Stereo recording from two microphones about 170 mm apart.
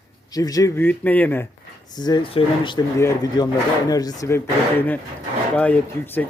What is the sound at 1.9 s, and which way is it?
Speech, 25° left (ahead or behind).